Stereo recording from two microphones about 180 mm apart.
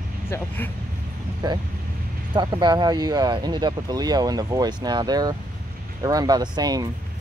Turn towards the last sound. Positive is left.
turn(degrees=-20)  # may be behind; listen again after turning